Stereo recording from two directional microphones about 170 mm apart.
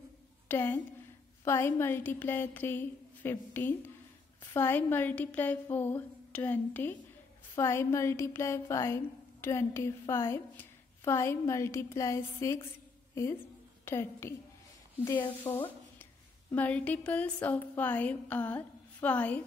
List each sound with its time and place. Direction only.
0.5 s a woman's voice: 10° left (ahead or behind)
15.0 s speech: 25° left (ahead or behind)
16.0 s a woman's voice: 10° left (ahead or behind)